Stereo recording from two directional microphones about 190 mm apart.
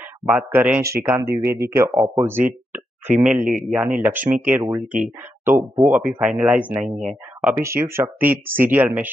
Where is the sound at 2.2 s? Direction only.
10° right (ahead or behind).